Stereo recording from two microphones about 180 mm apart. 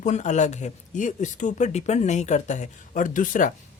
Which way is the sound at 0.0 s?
40° left (ahead or behind).